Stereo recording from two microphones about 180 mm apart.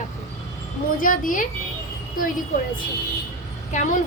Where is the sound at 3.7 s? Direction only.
40° left (ahead or behind).